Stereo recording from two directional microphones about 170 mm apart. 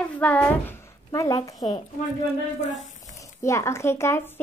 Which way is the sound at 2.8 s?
45° left (ahead or behind).